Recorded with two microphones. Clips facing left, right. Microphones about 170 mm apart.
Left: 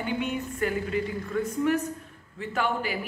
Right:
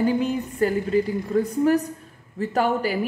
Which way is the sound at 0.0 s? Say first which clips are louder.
Right 7 dB; 35° right (ahead or behind).